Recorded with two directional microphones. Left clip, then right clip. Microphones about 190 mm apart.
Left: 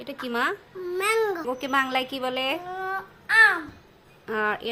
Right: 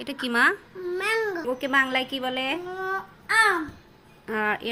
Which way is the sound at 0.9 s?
60° left (ahead or behind).